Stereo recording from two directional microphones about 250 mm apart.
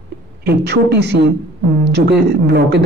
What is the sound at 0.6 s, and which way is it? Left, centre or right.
Speech, right.